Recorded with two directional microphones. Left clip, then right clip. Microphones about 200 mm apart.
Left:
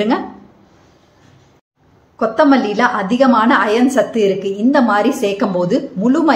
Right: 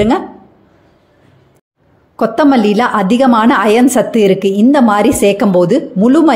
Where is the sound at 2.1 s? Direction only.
40° right (ahead or behind).